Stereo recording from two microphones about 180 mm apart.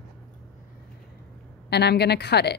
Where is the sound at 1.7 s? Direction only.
65° left (ahead or behind).